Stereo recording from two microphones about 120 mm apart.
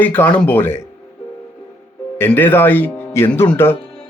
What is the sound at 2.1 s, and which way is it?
Speech, 20° left (ahead or behind).